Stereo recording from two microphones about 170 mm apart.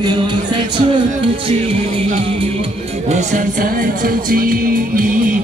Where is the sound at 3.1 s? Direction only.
55° right (ahead or behind).